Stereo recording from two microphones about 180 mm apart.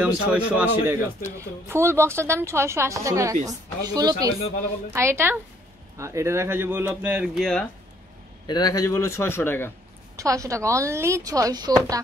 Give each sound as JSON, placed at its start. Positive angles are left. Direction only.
{"t": 0.0, "sound": "a man's voice", "side_deg": -10}
{"t": 8.5, "sound": "a man's voice", "side_deg": 20}
{"t": 10.1, "sound": "a man's voice", "side_deg": -20}